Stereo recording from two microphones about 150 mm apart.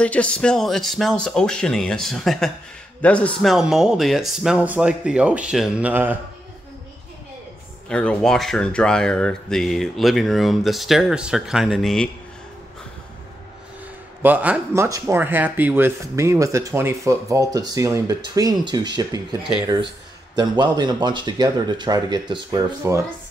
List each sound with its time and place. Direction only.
0.0 s a man's voice: 10° left (ahead or behind)
3.5 s speech: 5° right (ahead or behind)
7.9 s speech: 5° left (ahead or behind)
14.2 s speech: 10° right (ahead or behind); by 19.2 s 30° right (ahead or behind)
20.3 s speech: 30° right (ahead or behind)